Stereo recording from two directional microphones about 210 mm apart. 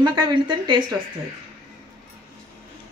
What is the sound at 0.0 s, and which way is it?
Speech, 20° right (ahead or behind).